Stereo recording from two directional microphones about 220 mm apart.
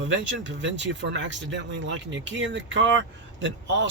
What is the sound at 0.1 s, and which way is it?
Speech, 55° right (ahead or behind).